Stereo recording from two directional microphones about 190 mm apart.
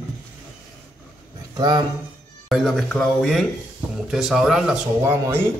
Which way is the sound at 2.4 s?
Centre (ahead or behind).